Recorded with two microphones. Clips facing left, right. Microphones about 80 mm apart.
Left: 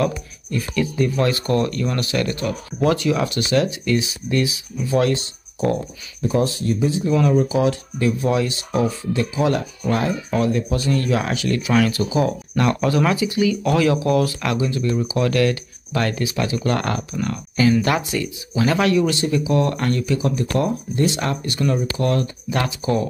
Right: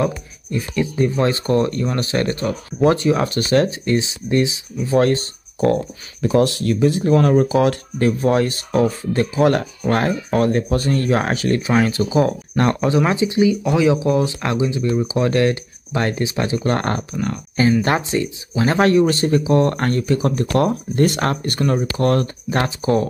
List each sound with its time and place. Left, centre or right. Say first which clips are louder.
0.0 s speech: right 1 dB; right
4.8 s speech: right 3 dB; right
6.2 s speech: right 4 dB; right
12.8 s speech: right 2 dB; right
20.5 s speech: right 4 dB; right